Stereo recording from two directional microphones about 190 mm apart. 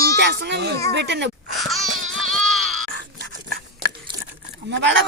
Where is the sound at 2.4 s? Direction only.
Centre (ahead or behind).